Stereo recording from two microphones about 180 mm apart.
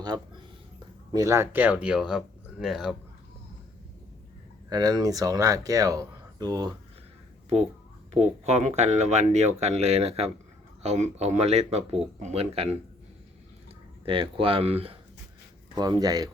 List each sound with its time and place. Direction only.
1.1 s speech: 15° right (ahead or behind)
4.7 s speech: 20° right (ahead or behind)
8.1 s speech: 35° right (ahead or behind)
14.0 s speech: 30° right (ahead or behind)
15.7 s speech: 20° right (ahead or behind)